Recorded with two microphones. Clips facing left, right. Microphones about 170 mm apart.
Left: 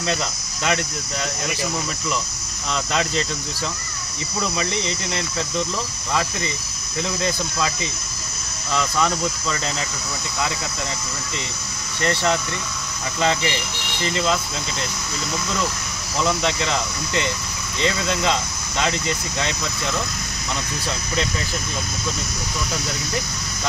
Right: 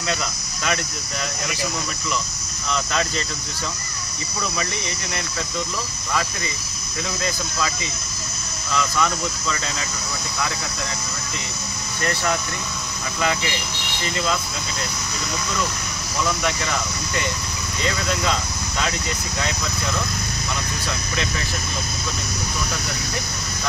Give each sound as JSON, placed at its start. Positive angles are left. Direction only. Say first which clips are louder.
{"t": 0.1, "sound": "speech", "louder": "left 1 dB", "side_deg": 25}
{"t": 2.7, "sound": "speech", "louder": "even", "side_deg": 20}
{"t": 4.4, "sound": "speech", "louder": "left 3 dB", "side_deg": 25}
{"t": 8.7, "sound": "speech", "louder": "left 1 dB", "side_deg": 30}
{"t": 12.0, "sound": "speech", "louder": "left 3 dB", "side_deg": 25}
{"t": 16.3, "sound": "speech", "louder": "left 3 dB", "side_deg": 25}